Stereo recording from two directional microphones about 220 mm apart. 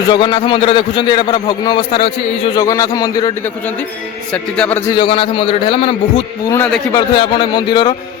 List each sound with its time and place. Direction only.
0.1 s a man's voice: 20° left (ahead or behind)
4.3 s a man's voice: 5° left (ahead or behind)
4.9 s a man's voice: 20° left (ahead or behind)